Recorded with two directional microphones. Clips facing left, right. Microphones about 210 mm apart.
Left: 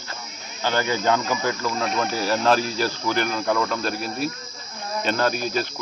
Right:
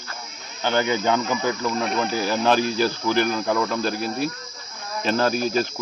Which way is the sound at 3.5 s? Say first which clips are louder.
Right 1 dB; 15° right (ahead or behind).